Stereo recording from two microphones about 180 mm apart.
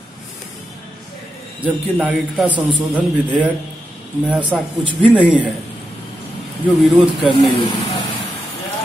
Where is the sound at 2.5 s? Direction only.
25° right (ahead or behind).